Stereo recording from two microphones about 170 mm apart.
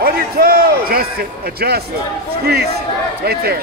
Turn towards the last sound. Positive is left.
turn(degrees=-65)  # may be behind; listen again after turning